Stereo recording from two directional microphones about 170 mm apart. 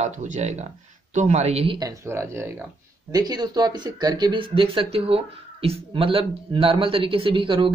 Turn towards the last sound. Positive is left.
turn(degrees=-30)  # may be behind; listen again after turning